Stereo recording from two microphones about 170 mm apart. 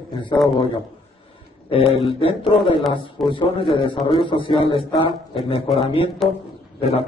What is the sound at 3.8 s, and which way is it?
A man's voice, 30° left (ahead or behind).